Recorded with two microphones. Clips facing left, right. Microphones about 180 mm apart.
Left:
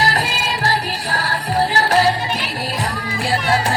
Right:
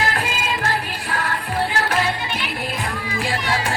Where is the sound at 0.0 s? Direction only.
40° left (ahead or behind).